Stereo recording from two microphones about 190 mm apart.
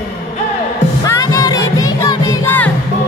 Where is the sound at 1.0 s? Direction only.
15° left (ahead or behind).